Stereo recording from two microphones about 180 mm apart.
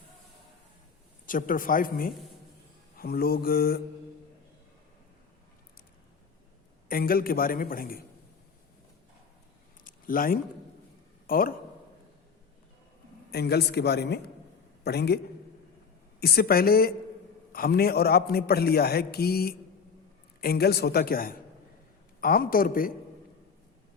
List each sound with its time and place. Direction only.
1.3 s a man's voice: 50° left (ahead or behind)
6.8 s a man's voice: 55° left (ahead or behind)
9.8 s a sound: 50° left (ahead or behind)
11.3 s a man's voice: 55° left (ahead or behind)
13.3 s a man's voice: 65° left (ahead or behind)
16.2 s a man's voice: 60° left (ahead or behind)